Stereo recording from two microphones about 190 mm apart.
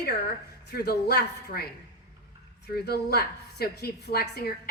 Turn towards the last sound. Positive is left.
turn(degrees=55)  # may be behind; listen again after turning